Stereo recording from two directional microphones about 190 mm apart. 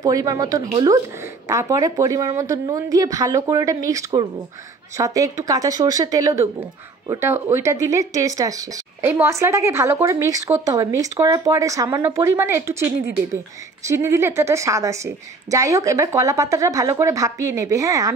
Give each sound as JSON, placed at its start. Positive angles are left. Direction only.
{"t": 0.0, "sound": "a woman's voice", "side_deg": -20}